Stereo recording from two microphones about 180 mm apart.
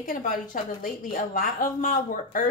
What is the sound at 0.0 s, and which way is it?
Speech, 50° left (ahead or behind).